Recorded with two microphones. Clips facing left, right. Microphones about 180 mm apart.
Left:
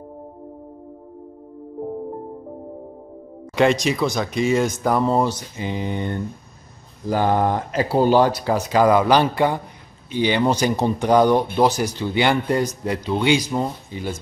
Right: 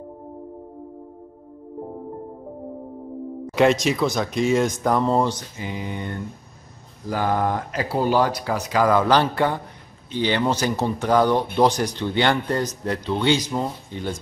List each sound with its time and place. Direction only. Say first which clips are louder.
3.5 s speech: even; centre (ahead or behind)
5.6 s speech: left 4 dB; 25° left (ahead or behind)
8.9 s speech: left 2 dB; 15° left (ahead or behind)